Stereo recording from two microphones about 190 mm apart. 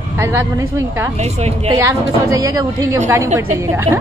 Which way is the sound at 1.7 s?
15° right (ahead or behind).